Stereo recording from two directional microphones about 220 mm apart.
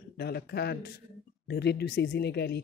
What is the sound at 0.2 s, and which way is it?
Speech, 50° left (ahead or behind).